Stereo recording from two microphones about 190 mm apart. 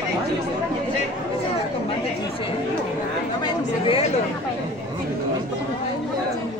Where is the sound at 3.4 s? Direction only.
30° left (ahead or behind).